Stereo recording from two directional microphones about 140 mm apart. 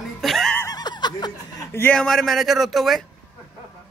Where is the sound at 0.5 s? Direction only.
25° left (ahead or behind).